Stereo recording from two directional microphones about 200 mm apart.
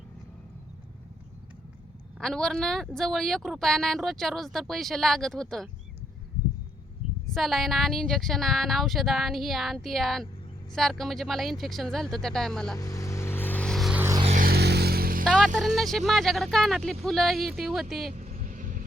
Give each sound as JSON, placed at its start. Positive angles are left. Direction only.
{"t": 2.1, "sound": "speech", "side_deg": 0}
{"t": 7.3, "sound": "speech", "side_deg": 0}
{"t": 12.7, "sound": "vehicle", "side_deg": 15}
{"t": 14.0, "sound": "a sound", "side_deg": -15}
{"t": 14.3, "sound": "a sound", "side_deg": -45}
{"t": 15.2, "sound": "music", "side_deg": 5}
{"t": 15.6, "sound": "speech", "side_deg": 0}
{"t": 18.1, "sound": "vehicle", "side_deg": -35}